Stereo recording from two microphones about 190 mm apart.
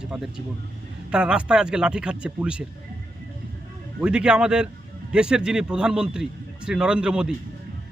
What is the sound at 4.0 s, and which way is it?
A man's voice, 5° right (ahead or behind).